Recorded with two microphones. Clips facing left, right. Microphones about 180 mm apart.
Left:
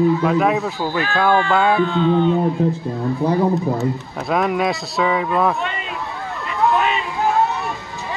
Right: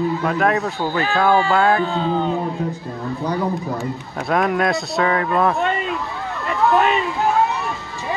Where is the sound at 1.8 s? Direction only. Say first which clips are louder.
Left 4 dB; 35° right (ahead or behind).